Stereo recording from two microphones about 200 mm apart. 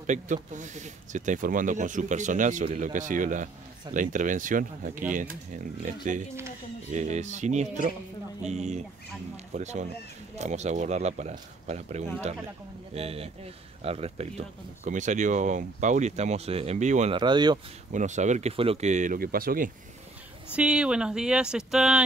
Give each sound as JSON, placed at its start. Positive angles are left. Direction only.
{"t": 0.0, "sound": "speech", "side_deg": -40}
{"t": 17.2, "sound": "speech", "side_deg": -20}
{"t": 17.9, "sound": "speech", "side_deg": -35}
{"t": 20.5, "sound": "speech", "side_deg": -5}